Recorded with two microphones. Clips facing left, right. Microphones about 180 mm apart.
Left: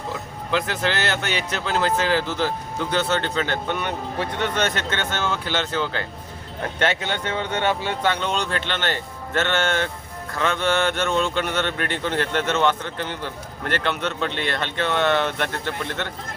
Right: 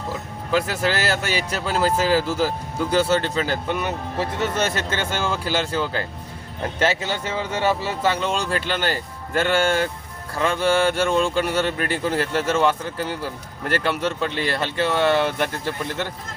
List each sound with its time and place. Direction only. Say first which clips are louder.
0.5 s speech: right 2 dB; 5° right (ahead or behind)
3.2 s a man's voice: right 1 dB; 35° right (ahead or behind)
3.7 s speech: right 1 dB; 5° right (ahead or behind)